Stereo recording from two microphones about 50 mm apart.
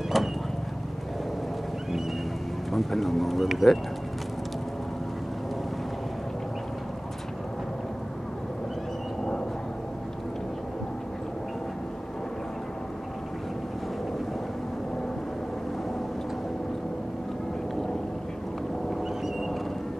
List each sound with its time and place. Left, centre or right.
0.1 s vehicle: centre
2.7 s speech: centre